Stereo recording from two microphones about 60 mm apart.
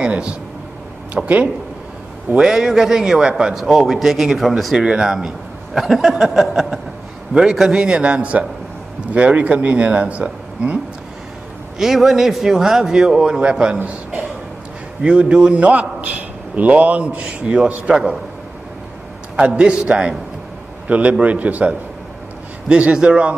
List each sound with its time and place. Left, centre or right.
0.0 s a sound: centre
1.1 s speech: right
2.3 s a man's voice: centre
4.7 s a man's voice: centre
11.8 s a man's voice: centre
15.0 s a man's voice: centre
19.4 s a man's voice: centre